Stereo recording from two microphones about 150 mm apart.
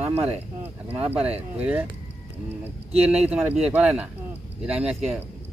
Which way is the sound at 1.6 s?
10° right (ahead or behind).